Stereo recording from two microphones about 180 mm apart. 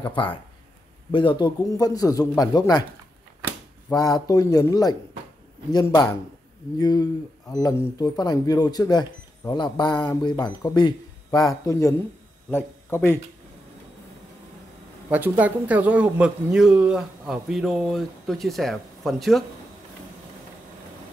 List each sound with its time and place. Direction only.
0.0 s speech: 25° left (ahead or behind)
3.9 s a man's voice: 20° left (ahead or behind)
15.0 s speech: 10° right (ahead or behind)